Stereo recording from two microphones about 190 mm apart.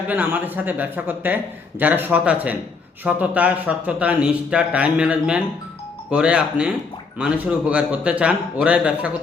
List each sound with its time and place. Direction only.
0.1 s a man's voice: 10° right (ahead or behind)